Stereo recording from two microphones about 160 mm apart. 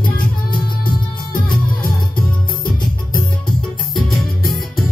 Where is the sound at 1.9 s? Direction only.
65° left (ahead or behind).